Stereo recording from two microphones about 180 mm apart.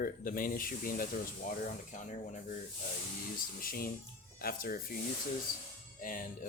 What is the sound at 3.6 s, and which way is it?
Speech, 55° left (ahead or behind).